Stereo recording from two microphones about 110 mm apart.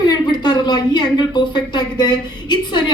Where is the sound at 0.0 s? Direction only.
40° left (ahead or behind).